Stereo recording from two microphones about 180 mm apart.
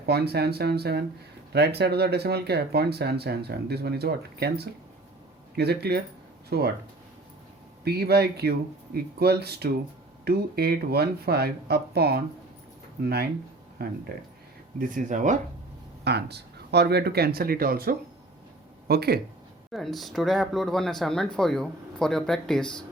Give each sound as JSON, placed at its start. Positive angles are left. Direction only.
{"t": 0.0, "sound": "speech", "side_deg": -65}
{"t": 7.9, "sound": "speech", "side_deg": -60}
{"t": 14.8, "sound": "speech", "side_deg": -45}
{"t": 16.0, "sound": "speech", "side_deg": -65}
{"t": 19.7, "sound": "speech", "side_deg": 0}